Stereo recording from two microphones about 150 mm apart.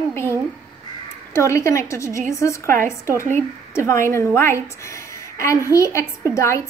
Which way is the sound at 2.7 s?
60° right (ahead or behind).